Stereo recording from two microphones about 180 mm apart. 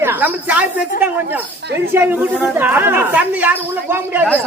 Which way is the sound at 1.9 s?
10° right (ahead or behind).